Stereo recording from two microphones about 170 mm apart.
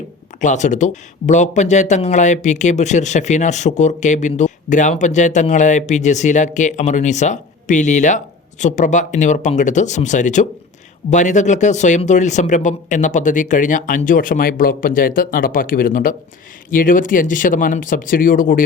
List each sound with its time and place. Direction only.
0.3 s speech: 45° left (ahead or behind)